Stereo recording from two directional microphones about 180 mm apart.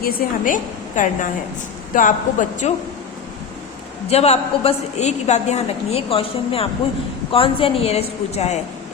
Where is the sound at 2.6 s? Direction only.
40° left (ahead or behind).